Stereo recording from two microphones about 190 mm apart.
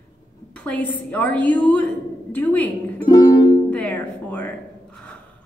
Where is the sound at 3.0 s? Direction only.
20° left (ahead or behind).